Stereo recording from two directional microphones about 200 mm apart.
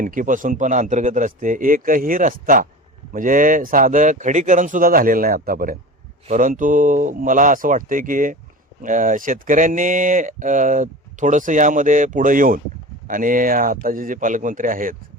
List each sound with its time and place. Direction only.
0.0 s speech: 40° right (ahead or behind)